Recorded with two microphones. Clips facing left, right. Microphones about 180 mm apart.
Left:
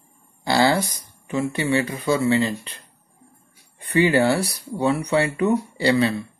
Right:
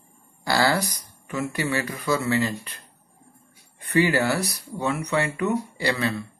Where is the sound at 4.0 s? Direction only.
25° left (ahead or behind).